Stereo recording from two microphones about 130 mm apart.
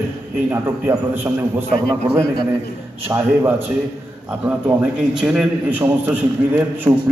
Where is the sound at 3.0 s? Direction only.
15° right (ahead or behind).